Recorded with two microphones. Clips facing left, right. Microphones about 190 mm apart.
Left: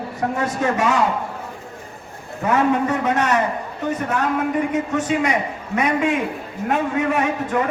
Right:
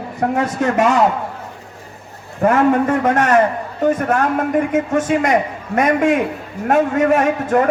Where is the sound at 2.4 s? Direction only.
50° right (ahead or behind).